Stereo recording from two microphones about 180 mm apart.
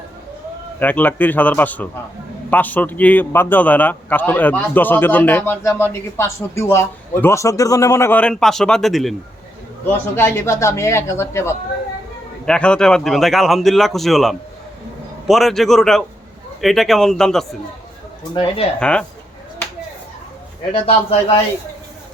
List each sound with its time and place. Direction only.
0.8 s a man's voice: 10° left (ahead or behind)
9.8 s a man's voice: 15° left (ahead or behind)
18.2 s speech: 30° left (ahead or behind)
18.8 s speech: 5° left (ahead or behind)
20.7 s a man's voice: 30° left (ahead or behind)